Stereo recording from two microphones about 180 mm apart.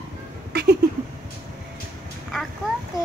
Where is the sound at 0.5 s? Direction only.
65° right (ahead or behind).